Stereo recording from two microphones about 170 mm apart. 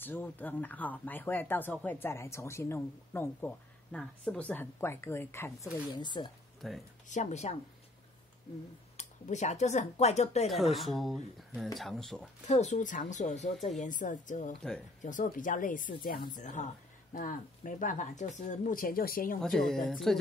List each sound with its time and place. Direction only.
0.0 s speech: 10° left (ahead or behind)
5.9 s speech: 25° left (ahead or behind)
6.6 s speech: centre (ahead or behind)
7.1 s speech: 45° left (ahead or behind)
8.9 s speech: 45° left (ahead or behind)
10.4 s speech: centre (ahead or behind)
12.4 s speech: 45° left (ahead or behind)
19.4 s speech: 5° left (ahead or behind)